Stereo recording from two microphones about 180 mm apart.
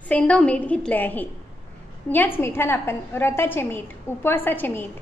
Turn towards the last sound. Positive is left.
turn(degrees=10)  # may be behind; listen again after turning